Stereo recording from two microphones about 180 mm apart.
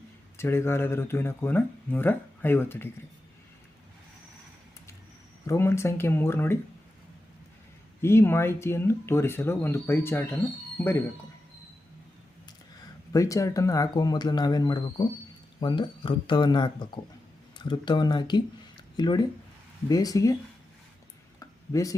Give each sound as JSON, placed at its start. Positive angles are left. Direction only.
{"t": 0.3, "sound": "speech", "side_deg": 15}
{"t": 5.5, "sound": "speech", "side_deg": 15}
{"t": 8.0, "sound": "speech", "side_deg": 15}
{"t": 13.1, "sound": "speech", "side_deg": 20}
{"t": 21.3, "sound": "a sound", "side_deg": 20}